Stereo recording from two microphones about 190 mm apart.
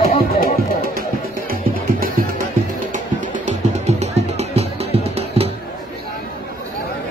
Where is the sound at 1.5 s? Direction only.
50° right (ahead or behind); by 5.5 s 30° right (ahead or behind).